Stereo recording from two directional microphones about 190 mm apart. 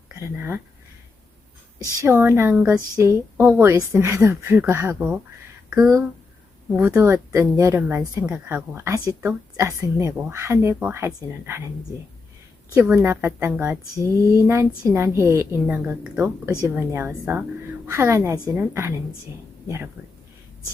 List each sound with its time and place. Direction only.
0.1 s speech: 15° right (ahead or behind)
2.0 s a woman's voice: 15° right (ahead or behind)
12.7 s a woman's voice: 10° right (ahead or behind)